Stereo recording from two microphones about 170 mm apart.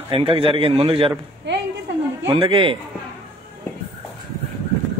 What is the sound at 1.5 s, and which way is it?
Speech, 90° right.